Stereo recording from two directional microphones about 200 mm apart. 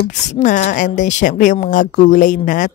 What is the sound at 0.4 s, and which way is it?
Speech, 40° left (ahead or behind).